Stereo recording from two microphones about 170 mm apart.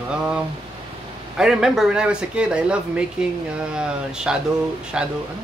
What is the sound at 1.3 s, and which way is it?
Speech, 5° right (ahead or behind).